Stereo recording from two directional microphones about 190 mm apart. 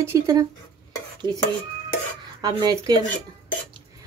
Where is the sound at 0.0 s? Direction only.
15° right (ahead or behind).